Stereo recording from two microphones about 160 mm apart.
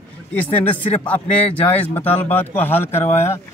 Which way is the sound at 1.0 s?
10° left (ahead or behind).